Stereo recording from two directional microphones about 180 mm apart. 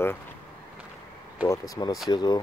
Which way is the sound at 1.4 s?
20° left (ahead or behind).